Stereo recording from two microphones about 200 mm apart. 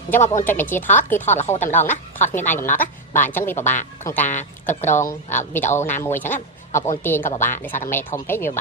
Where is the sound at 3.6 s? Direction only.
40° left (ahead or behind).